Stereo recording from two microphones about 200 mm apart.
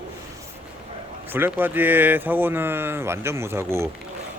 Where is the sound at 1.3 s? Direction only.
10° right (ahead or behind).